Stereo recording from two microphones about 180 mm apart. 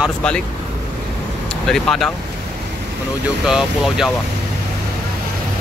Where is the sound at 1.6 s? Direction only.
5° left (ahead or behind).